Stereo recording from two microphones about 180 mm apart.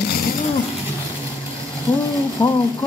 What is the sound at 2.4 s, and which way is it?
Speech, 20° left (ahead or behind).